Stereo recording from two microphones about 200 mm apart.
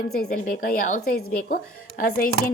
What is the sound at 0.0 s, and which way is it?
A woman's voice, 45° left (ahead or behind).